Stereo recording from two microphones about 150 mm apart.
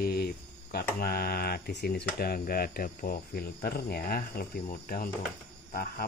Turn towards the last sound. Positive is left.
turn(degrees=80)